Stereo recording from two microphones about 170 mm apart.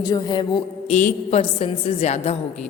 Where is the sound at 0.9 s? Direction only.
45° left (ahead or behind).